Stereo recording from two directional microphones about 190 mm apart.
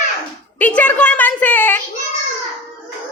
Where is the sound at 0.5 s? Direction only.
10° left (ahead or behind).